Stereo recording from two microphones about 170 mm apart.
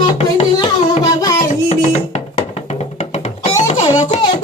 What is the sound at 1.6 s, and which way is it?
Music, 40° left (ahead or behind).